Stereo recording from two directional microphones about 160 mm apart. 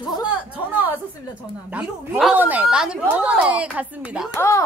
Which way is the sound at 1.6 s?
5° right (ahead or behind).